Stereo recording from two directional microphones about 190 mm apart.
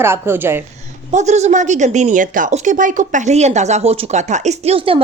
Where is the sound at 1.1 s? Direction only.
35° right (ahead or behind).